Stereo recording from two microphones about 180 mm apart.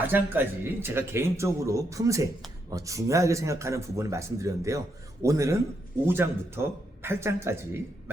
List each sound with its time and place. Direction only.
0.1 s speech: 10° right (ahead or behind)